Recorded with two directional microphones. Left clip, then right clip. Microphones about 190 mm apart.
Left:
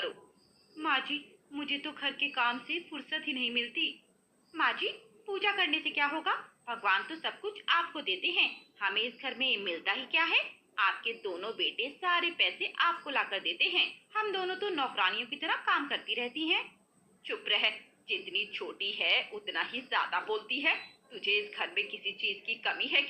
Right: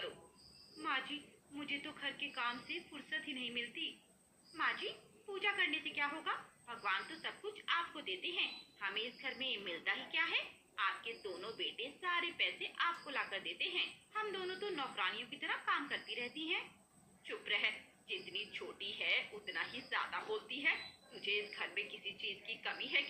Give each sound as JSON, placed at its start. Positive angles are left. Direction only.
{"t": 0.8, "sound": "a woman's voice", "side_deg": 50}